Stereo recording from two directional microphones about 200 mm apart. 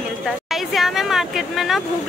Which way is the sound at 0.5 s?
Centre (ahead or behind).